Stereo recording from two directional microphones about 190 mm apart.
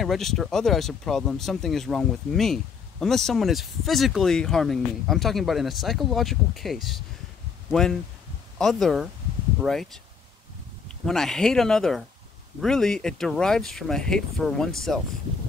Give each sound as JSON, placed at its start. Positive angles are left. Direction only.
{"t": 0.0, "sound": "speech", "side_deg": 0}
{"t": 11.1, "sound": "speech", "side_deg": 0}